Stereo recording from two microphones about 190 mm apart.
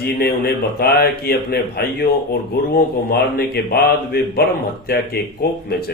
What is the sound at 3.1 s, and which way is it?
Speech, 55° left (ahead or behind).